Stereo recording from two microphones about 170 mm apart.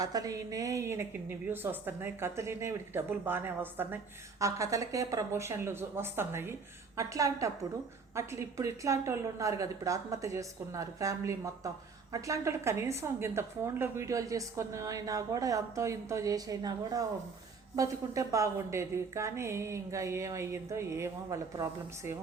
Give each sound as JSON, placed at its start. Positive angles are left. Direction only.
{"t": 0.0, "sound": "a woman's voice", "side_deg": -20}